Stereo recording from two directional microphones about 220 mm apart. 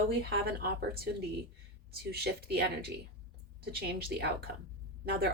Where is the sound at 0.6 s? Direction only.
45° right (ahead or behind).